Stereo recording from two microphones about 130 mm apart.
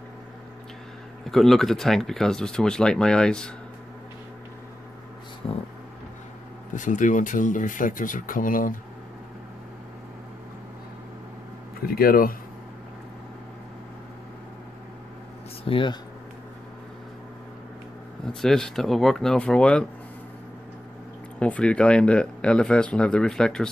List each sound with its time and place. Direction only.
1.3 s speech: centre (ahead or behind)
6.7 s speech: 75° left (ahead or behind)
12.1 s speech: 90° left
15.6 s speech: 40° left (ahead or behind)
18.2 s speech: 5° left (ahead or behind)
21.4 s speech: 10° left (ahead or behind)